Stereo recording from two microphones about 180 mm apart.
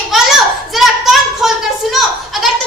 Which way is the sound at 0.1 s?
Centre (ahead or behind).